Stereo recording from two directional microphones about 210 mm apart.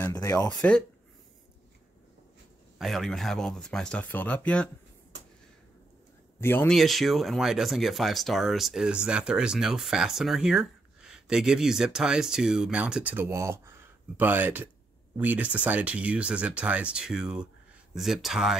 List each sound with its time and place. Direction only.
0.0 s a sound: 15° left (ahead or behind)
2.8 s speech: centre (ahead or behind)
6.4 s speech: 10° left (ahead or behind)